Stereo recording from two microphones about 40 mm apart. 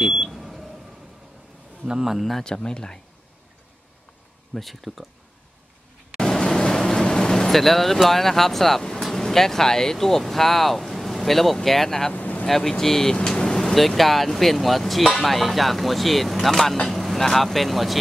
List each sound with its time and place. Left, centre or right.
0.0 s a sound: centre
0.3 s a sound: centre
1.9 s speech: centre
2.1 s speech: centre
2.4 s speech: centre
4.6 s speech: centre
6.1 s speech: centre
12.1 s vehicle: left
12.4 s speech: centre
13.7 s speech: centre
16.9 s vehicle: centre
17.2 s speech: centre